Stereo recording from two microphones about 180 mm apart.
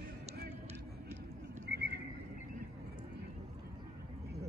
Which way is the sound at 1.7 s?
70° right (ahead or behind).